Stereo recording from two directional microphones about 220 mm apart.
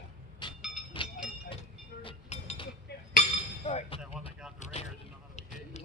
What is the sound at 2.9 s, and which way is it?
Chink, 45° left (ahead or behind).